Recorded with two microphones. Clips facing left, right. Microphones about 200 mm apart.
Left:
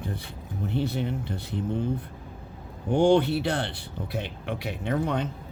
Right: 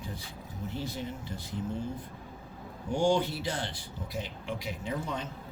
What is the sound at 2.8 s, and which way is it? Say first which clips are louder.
Speech: left 7 dB; 60° left (ahead or behind).